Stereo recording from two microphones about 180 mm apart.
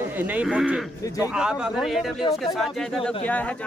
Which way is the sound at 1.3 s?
5° right (ahead or behind).